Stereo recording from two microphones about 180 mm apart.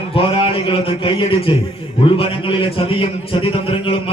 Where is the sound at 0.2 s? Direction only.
30° left (ahead or behind).